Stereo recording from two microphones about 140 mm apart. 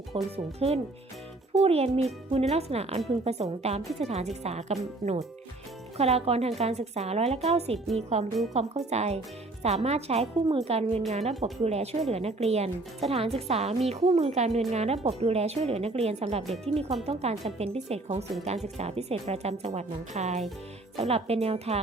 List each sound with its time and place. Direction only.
0.3 s speech: 45° right (ahead or behind)
11.3 s speech: centre (ahead or behind)
11.6 s speech: 50° right (ahead or behind)
16.4 s speech: centre (ahead or behind)
16.7 s speech: 45° right (ahead or behind)